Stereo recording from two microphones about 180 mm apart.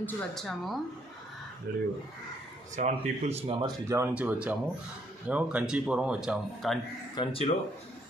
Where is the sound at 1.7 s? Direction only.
60° right (ahead or behind).